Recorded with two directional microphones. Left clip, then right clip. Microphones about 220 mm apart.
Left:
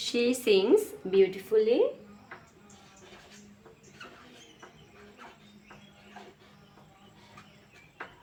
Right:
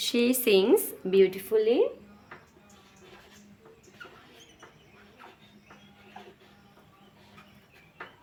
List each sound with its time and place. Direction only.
0.0 s a woman's voice: 45° right (ahead or behind)